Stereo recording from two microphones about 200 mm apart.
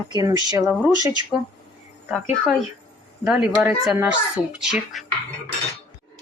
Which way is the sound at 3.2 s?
Centre (ahead or behind).